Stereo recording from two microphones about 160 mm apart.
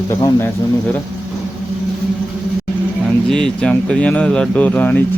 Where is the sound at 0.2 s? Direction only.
15° left (ahead or behind).